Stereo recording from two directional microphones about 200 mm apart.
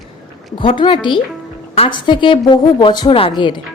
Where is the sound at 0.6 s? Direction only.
25° left (ahead or behind).